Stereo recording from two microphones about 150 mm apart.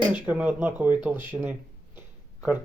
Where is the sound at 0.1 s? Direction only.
10° right (ahead or behind).